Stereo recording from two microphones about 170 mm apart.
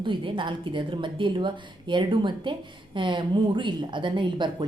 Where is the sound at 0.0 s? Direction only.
30° right (ahead or behind).